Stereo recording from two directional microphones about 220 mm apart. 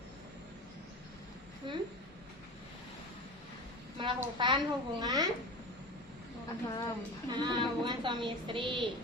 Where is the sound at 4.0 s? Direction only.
20° right (ahead or behind).